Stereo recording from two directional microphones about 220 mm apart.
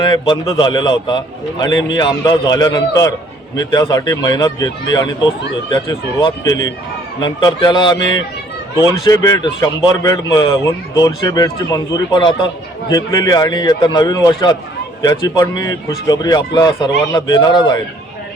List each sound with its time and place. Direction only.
0.0 s speech: 20° left (ahead or behind)